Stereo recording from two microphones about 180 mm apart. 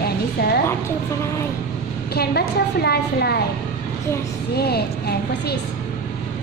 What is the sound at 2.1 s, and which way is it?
A woman's voice, 60° left (ahead or behind).